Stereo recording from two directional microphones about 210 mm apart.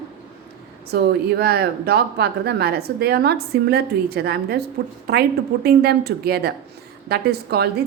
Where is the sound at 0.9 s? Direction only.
50° right (ahead or behind).